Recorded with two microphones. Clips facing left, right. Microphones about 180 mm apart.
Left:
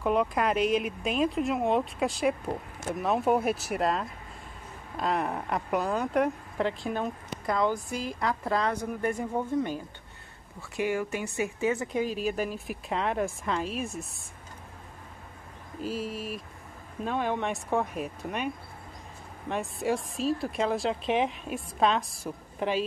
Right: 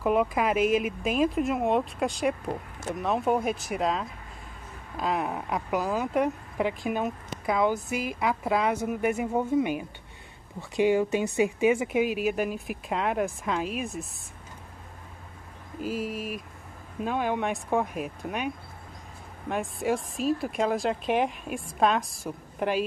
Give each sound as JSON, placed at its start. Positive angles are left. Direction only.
{"t": 0.0, "sound": "speech", "side_deg": -5}
{"t": 6.7, "sound": "speech", "side_deg": -15}
{"t": 15.9, "sound": "speech", "side_deg": -45}
{"t": 17.0, "sound": "speech", "side_deg": -5}
{"t": 19.5, "sound": "speech", "side_deg": 0}